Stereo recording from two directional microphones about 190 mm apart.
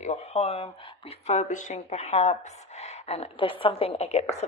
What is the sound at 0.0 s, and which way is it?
Speech, 35° left (ahead or behind).